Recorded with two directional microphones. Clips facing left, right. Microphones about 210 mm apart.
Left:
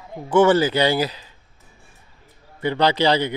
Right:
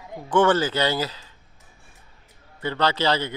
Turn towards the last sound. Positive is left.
turn(degrees=15)  # may be behind; listen again after turning